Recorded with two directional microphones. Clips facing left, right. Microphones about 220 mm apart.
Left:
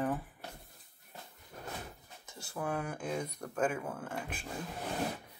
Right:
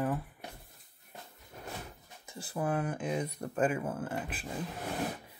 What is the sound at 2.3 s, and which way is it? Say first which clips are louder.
Speech: right 4 dB; 5° right (ahead or behind).